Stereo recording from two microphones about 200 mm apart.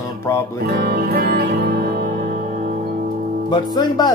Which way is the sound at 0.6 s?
50° right (ahead or behind).